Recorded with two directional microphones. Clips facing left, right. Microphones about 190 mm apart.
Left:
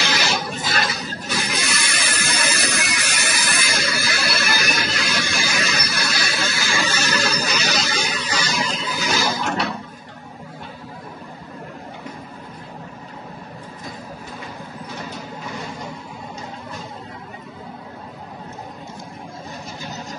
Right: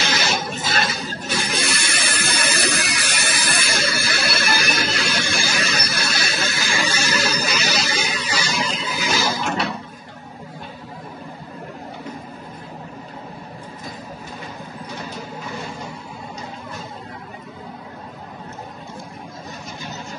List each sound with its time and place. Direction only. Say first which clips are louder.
0.0 s a sound: even; 25° right (ahead or behind)
1.3 s music: right 1 dB; 30° right (ahead or behind)
6.8 s music: even; 10° right (ahead or behind)